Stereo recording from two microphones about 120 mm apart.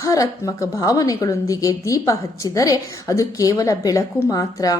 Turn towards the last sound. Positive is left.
turn(degrees=30)  # may be behind; listen again after turning